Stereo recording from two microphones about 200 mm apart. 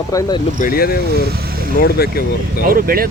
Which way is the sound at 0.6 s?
50° left (ahead or behind).